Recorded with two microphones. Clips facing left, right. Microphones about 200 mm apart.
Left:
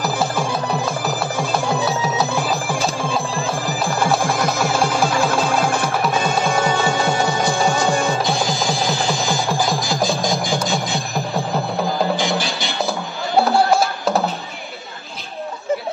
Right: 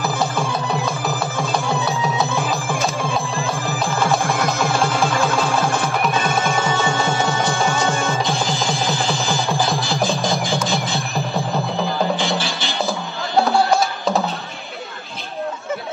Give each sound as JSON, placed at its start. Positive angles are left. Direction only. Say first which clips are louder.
{"t": 4.4, "sound": "music", "louder": "left 1 dB", "side_deg": 0}
{"t": 4.7, "sound": "music", "louder": "left 1 dB", "side_deg": 15}
{"t": 12.2, "sound": "music", "louder": "left 1 dB", "side_deg": 15}
{"t": 13.4, "sound": "music", "louder": "left 1 dB", "side_deg": 0}